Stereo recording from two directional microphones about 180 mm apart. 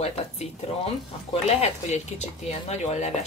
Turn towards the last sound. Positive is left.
turn(degrees=40)  # may be behind; listen again after turning